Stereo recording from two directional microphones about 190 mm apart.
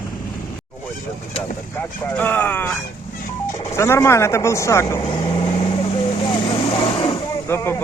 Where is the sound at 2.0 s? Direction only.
10° left (ahead or behind).